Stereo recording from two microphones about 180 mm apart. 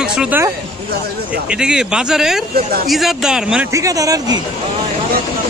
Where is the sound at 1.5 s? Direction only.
5° right (ahead or behind).